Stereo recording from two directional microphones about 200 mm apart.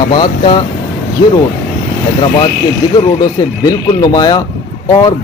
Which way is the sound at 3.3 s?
20° left (ahead or behind).